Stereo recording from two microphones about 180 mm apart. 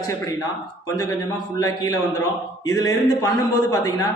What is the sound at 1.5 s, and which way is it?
A man's voice, 20° left (ahead or behind).